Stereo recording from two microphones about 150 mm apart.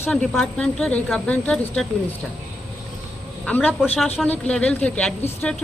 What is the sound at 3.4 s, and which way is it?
A woman's voice, 10° left (ahead or behind).